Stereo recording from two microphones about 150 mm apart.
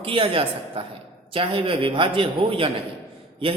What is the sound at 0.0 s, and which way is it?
A man's voice, 35° right (ahead or behind).